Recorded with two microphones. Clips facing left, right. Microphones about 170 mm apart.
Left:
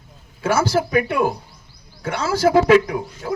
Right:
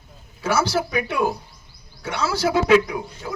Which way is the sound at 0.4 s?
50° left (ahead or behind).